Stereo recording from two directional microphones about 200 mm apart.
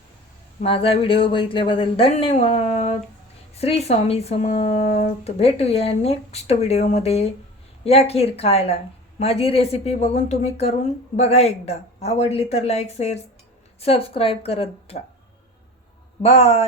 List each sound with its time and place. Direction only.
0.6 s speech: 30° left (ahead or behind)
16.2 s speech: 30° left (ahead or behind)